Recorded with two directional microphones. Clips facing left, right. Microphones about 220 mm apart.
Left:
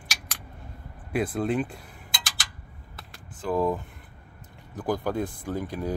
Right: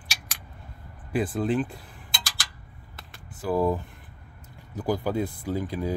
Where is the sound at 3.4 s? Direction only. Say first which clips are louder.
Right 1 dB; 10° right (ahead or behind).